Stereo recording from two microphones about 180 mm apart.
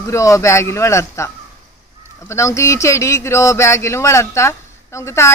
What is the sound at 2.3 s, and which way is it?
Speech, 15° left (ahead or behind).